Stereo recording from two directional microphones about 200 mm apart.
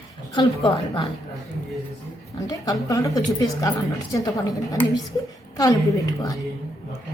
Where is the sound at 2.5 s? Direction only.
20° left (ahead or behind).